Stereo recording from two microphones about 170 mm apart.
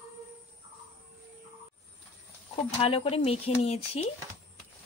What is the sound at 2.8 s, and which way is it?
Speech, 35° left (ahead or behind).